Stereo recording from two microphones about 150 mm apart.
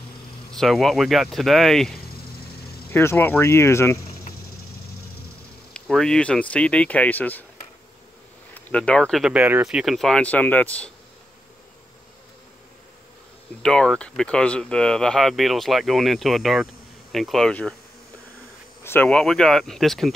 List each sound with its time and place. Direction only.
0.5 s speech: centre (ahead or behind)
2.9 s speech: 15° left (ahead or behind)
5.7 s speech: 5° left (ahead or behind)
8.5 s speech: 10° left (ahead or behind)
9.3 s speech: 10° right (ahead or behind); by 10.9 s 10° left (ahead or behind)
13.6 s speech: 5° left (ahead or behind)
18.9 s speech: 10° left (ahead or behind)